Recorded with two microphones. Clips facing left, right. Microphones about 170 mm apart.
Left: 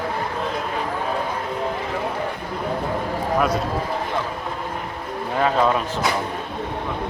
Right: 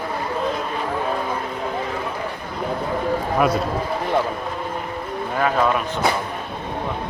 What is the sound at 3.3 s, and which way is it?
Speech, 5° right (ahead or behind).